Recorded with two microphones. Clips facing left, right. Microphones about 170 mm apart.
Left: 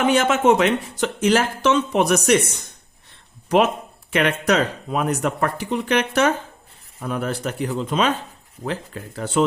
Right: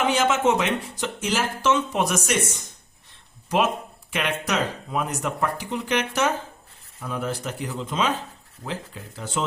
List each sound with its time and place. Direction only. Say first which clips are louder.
0.0 s speech: left 4 dB; 55° left (ahead or behind)
4.1 s speech: left 7 dB; 60° left (ahead or behind)